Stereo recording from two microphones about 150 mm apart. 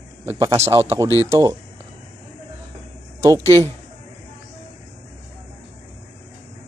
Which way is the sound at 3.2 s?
20° right (ahead or behind).